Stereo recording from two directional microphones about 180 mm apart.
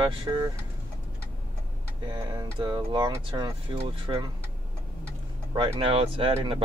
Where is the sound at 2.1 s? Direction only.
20° right (ahead or behind).